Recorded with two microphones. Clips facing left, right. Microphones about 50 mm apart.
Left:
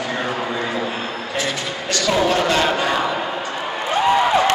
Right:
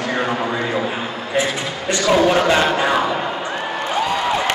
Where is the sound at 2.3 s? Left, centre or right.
Centre.